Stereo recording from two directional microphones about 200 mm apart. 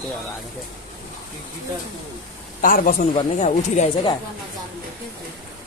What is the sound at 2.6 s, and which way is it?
A man's voice, 45° left (ahead or behind).